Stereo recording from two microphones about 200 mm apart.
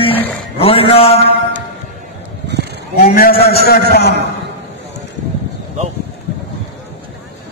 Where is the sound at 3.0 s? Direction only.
45° left (ahead or behind).